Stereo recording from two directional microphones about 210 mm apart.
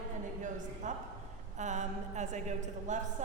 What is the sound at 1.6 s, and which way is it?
A woman's voice, 35° right (ahead or behind).